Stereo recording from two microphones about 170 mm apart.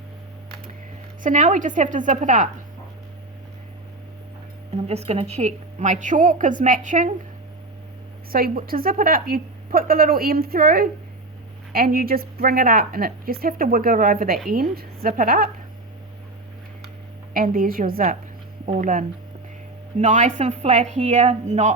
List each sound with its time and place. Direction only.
1.2 s a woman's voice: 50° right (ahead or behind)
4.9 s a woman's voice: 35° right (ahead or behind)
8.3 s a woman's voice: 60° right (ahead or behind)
17.3 s a woman's voice: 55° right (ahead or behind)